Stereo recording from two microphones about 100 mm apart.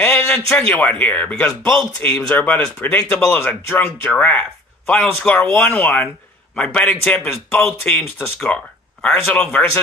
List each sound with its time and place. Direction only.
0.0 s a sound: 15° left (ahead or behind)
0.5 s speech: 10° left (ahead or behind)
1.5 s speech: 5° left (ahead or behind)
2.0 s speech: 20° left (ahead or behind)